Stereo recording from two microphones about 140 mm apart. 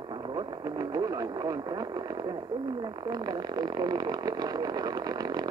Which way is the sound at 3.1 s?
30° right (ahead or behind).